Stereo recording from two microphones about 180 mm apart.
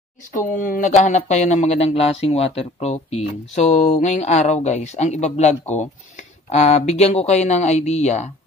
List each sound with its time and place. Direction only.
0.3 s speech: 50° left (ahead or behind)